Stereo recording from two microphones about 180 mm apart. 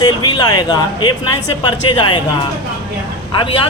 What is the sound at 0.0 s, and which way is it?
A woman's voice, 20° left (ahead or behind).